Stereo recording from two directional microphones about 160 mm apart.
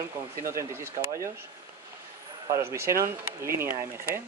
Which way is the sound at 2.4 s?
15° right (ahead or behind).